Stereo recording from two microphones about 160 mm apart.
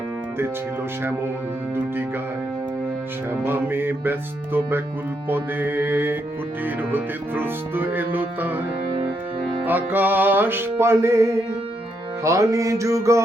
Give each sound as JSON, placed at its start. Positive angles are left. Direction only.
{"t": 3.4, "sound": "music", "side_deg": -15}
{"t": 9.6, "sound": "music", "side_deg": -10}